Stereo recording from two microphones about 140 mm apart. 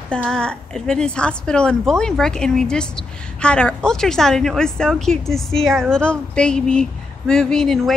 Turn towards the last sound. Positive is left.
turn(degrees=5)  # may be behind; listen again after turning